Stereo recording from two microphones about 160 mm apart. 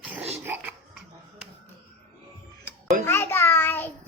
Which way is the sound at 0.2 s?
40° right (ahead or behind).